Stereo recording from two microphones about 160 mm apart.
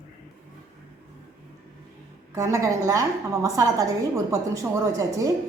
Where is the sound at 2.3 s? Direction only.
20° right (ahead or behind).